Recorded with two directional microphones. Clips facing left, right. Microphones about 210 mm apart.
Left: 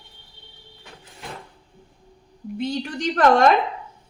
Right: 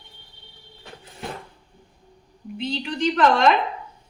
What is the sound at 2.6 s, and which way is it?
Speech, 50° left (ahead or behind).